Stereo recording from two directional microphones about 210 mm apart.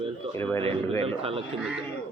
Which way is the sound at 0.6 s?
25° right (ahead or behind).